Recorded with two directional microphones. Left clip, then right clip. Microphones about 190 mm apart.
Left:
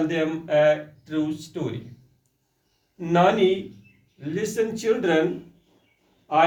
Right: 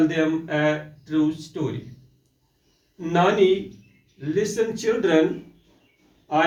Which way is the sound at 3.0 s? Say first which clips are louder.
Even; 30° left (ahead or behind).